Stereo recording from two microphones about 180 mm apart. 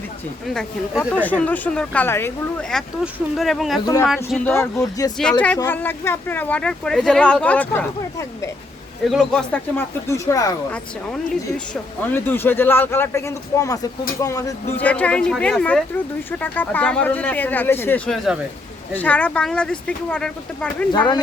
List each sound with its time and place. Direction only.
0.4 s speech: centre (ahead or behind)
9.0 s speech: centre (ahead or behind)
11.1 s speech: 5° left (ahead or behind)
20.9 s speech: 25° left (ahead or behind)